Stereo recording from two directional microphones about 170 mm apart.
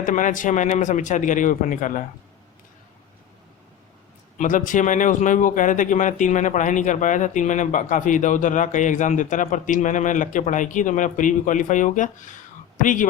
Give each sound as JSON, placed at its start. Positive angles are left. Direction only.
{"t": 0.0, "sound": "speech", "side_deg": 50}
{"t": 4.4, "sound": "speech", "side_deg": 50}